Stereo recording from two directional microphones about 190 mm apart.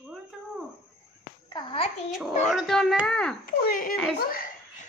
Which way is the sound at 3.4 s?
50° left (ahead or behind).